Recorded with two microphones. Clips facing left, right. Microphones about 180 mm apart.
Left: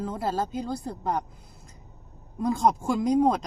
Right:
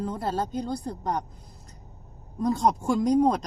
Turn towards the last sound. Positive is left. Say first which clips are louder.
# right 1 dB
turn(degrees=5)  # may be behind; listen again after turning